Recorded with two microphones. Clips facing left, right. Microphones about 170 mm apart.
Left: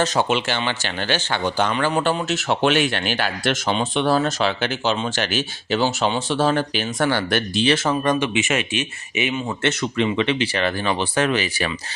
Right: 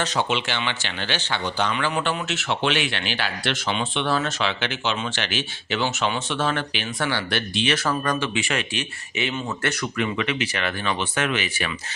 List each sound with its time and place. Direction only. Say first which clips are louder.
0.0 s speech: left 4 dB; 45° left (ahead or behind)
7.9 s speech: left 4 dB; 20° left (ahead or behind)